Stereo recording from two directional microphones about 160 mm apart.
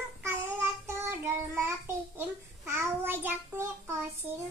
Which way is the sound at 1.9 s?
15° right (ahead or behind).